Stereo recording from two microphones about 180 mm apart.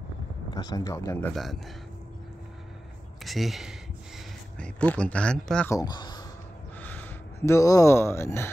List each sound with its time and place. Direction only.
0.5 s speech: 20° left (ahead or behind)
1.3 s speech: centre (ahead or behind)
3.3 s speech: centre (ahead or behind)
5.7 s speech: 20° left (ahead or behind)
6.8 s speech: 10° left (ahead or behind)